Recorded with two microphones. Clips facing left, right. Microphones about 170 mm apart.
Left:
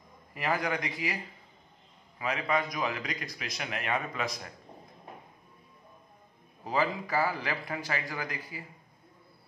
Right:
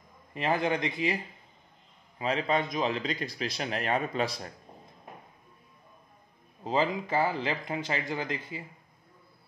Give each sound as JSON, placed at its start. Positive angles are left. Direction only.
{"t": 0.3, "sound": "a man's voice", "side_deg": -25}
{"t": 2.1, "sound": "a man's voice", "side_deg": -30}
{"t": 6.6, "sound": "a man's voice", "side_deg": -20}